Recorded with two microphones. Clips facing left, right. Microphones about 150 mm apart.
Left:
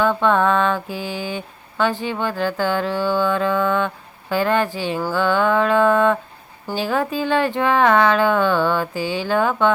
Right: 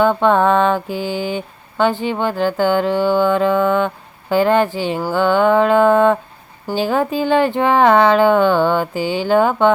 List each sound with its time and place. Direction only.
0.0 s music: 30° right (ahead or behind)